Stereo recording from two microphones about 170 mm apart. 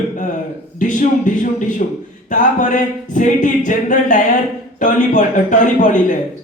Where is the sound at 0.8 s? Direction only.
50° left (ahead or behind).